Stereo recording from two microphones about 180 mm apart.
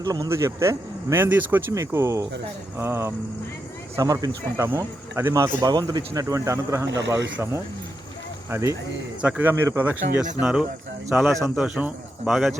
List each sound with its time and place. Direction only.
0.0 s speech: 20° right (ahead or behind)
8.4 s speech: 15° right (ahead or behind)